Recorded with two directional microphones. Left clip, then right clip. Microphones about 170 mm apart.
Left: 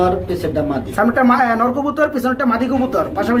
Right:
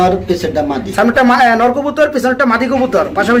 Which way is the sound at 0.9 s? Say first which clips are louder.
Right 4 dB; 15° right (ahead or behind).